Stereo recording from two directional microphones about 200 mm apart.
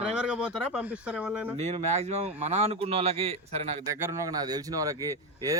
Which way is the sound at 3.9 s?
15° right (ahead or behind).